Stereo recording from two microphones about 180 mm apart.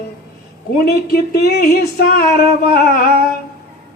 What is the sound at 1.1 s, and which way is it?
Music, 60° left (ahead or behind).